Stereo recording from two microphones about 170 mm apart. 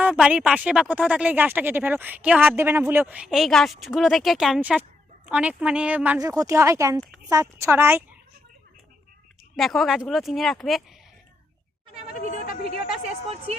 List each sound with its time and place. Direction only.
0.0 s speech: 5° right (ahead or behind)
6.3 s speech: 20° right (ahead or behind)
9.6 s a woman's voice: centre (ahead or behind)
12.3 s a woman's voice: 50° left (ahead or behind)
13.2 s speech: 35° right (ahead or behind)